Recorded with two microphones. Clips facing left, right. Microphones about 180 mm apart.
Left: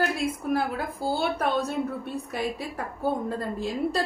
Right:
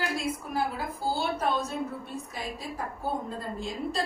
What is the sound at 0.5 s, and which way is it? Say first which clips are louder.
A woman's voice: left 3 dB; 60° left (ahead or behind).